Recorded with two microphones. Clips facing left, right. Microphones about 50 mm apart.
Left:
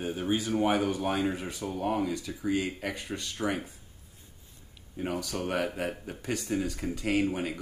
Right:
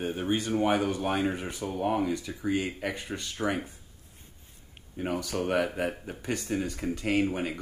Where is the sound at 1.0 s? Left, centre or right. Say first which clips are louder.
Right 1 dB; centre.